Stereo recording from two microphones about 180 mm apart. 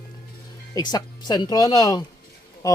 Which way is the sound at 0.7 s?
20° left (ahead or behind).